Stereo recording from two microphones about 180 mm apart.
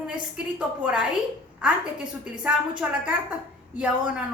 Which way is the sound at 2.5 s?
5° right (ahead or behind).